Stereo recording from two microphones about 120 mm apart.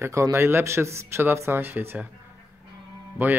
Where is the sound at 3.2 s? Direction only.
20° right (ahead or behind).